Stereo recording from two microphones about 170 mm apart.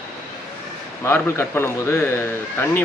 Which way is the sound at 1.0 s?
15° left (ahead or behind).